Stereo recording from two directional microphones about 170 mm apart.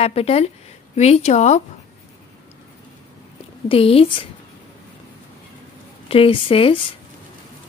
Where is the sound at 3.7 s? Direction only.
35° left (ahead or behind).